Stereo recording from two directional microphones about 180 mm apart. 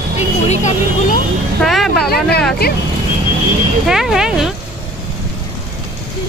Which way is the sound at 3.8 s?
5° right (ahead or behind).